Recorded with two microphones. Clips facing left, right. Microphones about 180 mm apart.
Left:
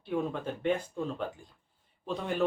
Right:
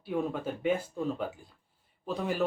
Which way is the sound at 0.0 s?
5° right (ahead or behind).